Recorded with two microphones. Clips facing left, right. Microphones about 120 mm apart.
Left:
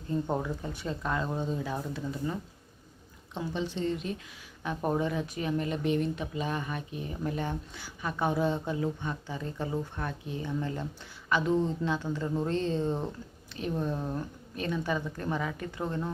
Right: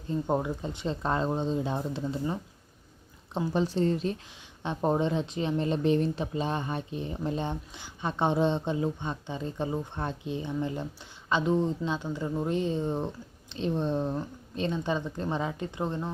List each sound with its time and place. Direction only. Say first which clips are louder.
0.1 s speech: right 2 dB; 20° right (ahead or behind)
3.3 s a woman's voice: right 6 dB; 40° right (ahead or behind); by 16.1 s 20° right (ahead or behind)